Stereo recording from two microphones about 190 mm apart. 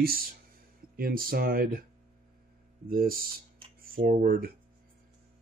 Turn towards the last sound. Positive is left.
turn(degrees=-50)  # may be behind; listen again after turning